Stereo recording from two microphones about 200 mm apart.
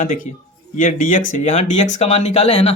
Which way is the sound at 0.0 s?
40° left (ahead or behind).